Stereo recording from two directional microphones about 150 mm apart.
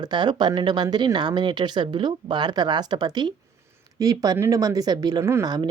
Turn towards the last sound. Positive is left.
turn(degrees=-25)  # may be behind; listen again after turning